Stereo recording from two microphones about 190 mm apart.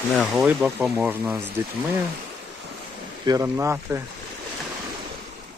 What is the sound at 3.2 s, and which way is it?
Speech, 20° right (ahead or behind).